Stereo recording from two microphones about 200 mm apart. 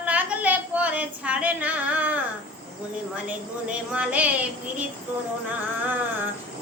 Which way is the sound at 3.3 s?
5° right (ahead or behind).